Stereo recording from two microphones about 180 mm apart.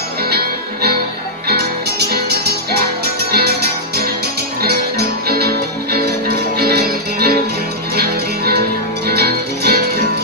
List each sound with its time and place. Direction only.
0.3 s music: 60° right (ahead or behind)